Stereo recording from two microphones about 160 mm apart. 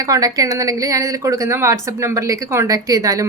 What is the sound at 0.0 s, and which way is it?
A woman's voice, 20° right (ahead or behind).